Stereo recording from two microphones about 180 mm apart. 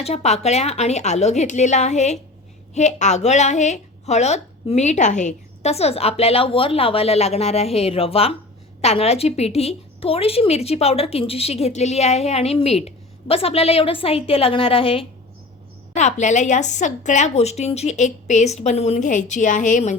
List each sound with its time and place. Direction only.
0.0 s a woman's voice: 35° left (ahead or behind)